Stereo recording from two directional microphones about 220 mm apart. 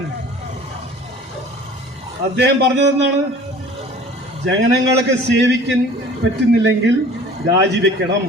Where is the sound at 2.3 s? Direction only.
50° right (ahead or behind).